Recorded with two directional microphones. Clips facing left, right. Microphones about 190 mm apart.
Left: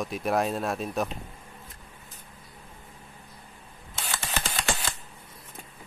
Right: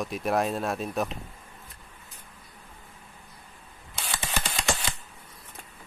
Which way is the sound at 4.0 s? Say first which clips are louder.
Even; 5° left (ahead or behind).